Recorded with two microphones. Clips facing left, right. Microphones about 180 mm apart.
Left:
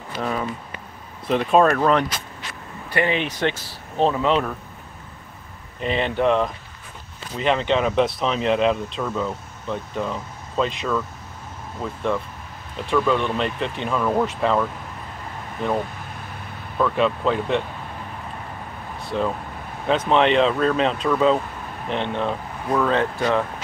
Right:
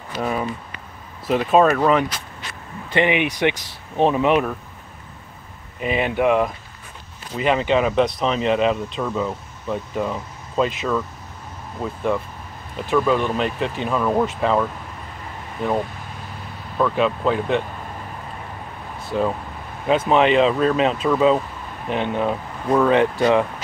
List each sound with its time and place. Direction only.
0.2 s speech: 10° right (ahead or behind)
2.9 s speech: 20° right (ahead or behind)
5.8 s speech: 10° right (ahead or behind)
16.7 s speech: 5° right (ahead or behind)
19.1 s speech: 5° right (ahead or behind)